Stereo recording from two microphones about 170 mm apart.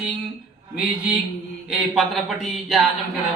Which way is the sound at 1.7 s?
Centre (ahead or behind).